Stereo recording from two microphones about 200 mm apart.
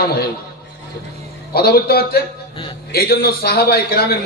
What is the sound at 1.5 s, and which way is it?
Speech, 50° left (ahead or behind).